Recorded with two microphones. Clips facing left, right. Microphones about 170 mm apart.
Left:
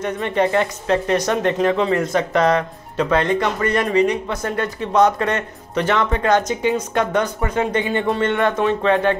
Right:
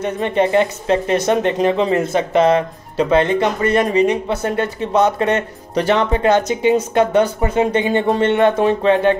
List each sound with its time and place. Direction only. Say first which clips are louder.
0.0 s speech: right 2 dB; 25° right (ahead or behind)